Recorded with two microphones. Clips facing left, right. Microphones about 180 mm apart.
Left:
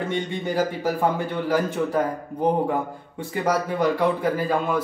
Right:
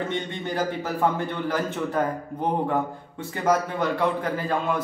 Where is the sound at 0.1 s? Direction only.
10° left (ahead or behind).